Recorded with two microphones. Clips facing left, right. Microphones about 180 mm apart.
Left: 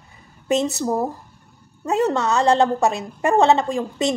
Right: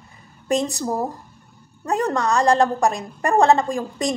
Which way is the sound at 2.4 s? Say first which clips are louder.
Even; 25° left (ahead or behind).